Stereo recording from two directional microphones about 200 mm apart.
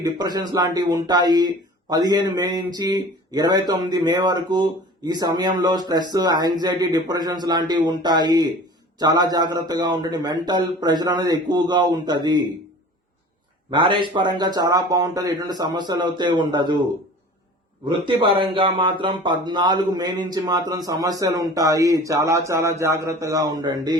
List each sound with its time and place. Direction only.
0.0 s speech: 20° right (ahead or behind)
13.7 s speech: 25° right (ahead or behind)
17.8 s speech: 25° right (ahead or behind)